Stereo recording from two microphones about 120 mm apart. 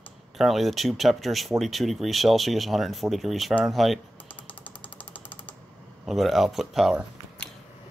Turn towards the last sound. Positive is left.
turn(degrees=0)  # may be behind; listen again after turning